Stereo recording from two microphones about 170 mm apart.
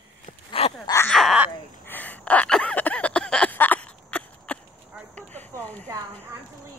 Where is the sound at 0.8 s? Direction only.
15° left (ahead or behind).